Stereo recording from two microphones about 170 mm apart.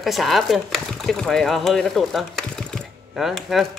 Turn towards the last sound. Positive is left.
turn(degrees=0)  # may be behind; listen again after turning